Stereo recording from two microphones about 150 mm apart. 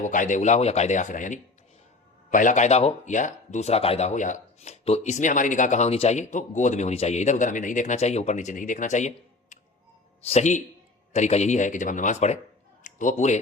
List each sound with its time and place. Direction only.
0.0 s speech: 60° left (ahead or behind)